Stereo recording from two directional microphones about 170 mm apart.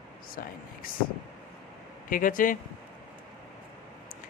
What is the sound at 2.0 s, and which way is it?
Speech, 55° left (ahead or behind).